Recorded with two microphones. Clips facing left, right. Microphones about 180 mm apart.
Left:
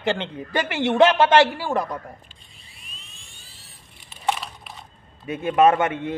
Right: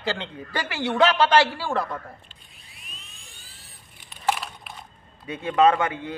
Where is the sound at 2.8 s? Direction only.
Centre (ahead or behind).